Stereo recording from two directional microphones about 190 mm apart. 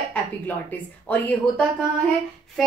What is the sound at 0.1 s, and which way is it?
Speech, 10° left (ahead or behind).